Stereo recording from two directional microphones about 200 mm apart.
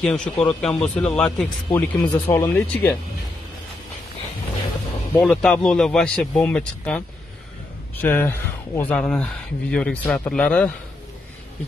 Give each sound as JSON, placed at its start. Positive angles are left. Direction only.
{"t": 0.0, "sound": "a man's voice", "side_deg": 5}
{"t": 5.1, "sound": "a man's voice", "side_deg": 0}
{"t": 8.0, "sound": "speech", "side_deg": 10}